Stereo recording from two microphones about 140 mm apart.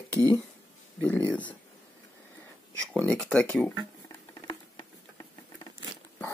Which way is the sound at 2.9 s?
10° left (ahead or behind).